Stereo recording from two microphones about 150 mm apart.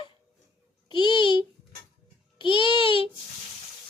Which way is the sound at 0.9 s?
30° left (ahead or behind).